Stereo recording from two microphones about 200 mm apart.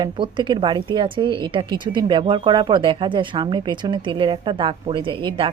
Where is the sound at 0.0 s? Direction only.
25° right (ahead or behind).